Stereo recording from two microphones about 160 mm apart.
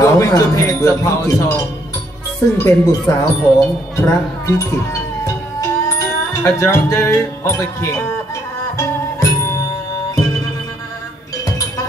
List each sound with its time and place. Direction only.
0.0 s speech: 20° left (ahead or behind)
8.7 s music: 20° left (ahead or behind)